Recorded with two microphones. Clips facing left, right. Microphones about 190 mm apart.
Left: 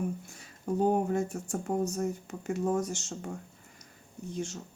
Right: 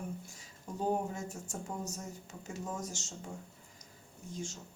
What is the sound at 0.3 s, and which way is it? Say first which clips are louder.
Speech: left 12 dB; 60° left (ahead or behind).